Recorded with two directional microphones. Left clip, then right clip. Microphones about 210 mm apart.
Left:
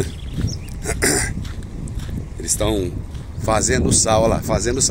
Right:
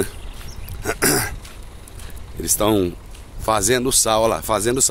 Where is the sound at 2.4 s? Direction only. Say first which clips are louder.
Right 3 dB; 20° right (ahead or behind).